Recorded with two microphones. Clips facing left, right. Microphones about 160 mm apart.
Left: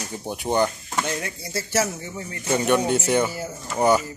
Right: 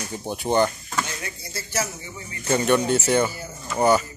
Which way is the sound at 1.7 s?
80° left.